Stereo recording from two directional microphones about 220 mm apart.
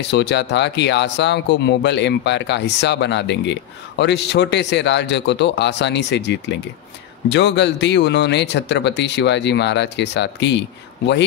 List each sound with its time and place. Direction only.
0.1 s speech: 50° left (ahead or behind)